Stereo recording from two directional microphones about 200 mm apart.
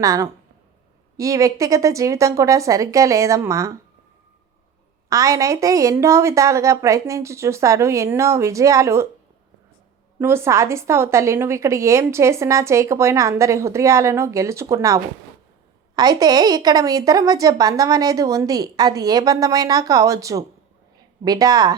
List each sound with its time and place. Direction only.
0.0 s a woman's voice: 15° right (ahead or behind)
5.0 s a woman's voice: 15° right (ahead or behind)
10.2 s a woman's voice: 10° right (ahead or behind)